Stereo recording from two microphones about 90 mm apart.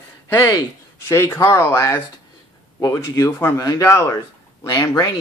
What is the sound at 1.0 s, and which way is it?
Speech, 30° left (ahead or behind).